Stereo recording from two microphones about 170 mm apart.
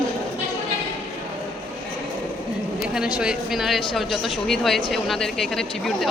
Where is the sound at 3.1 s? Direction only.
Centre (ahead or behind).